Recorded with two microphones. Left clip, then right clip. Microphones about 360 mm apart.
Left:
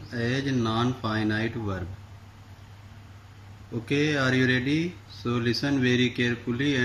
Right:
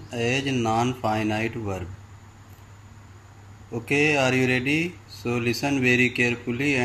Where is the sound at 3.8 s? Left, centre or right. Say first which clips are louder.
Right 4 dB; centre.